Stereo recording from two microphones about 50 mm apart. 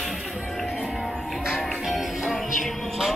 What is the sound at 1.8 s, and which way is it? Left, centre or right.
Music, centre.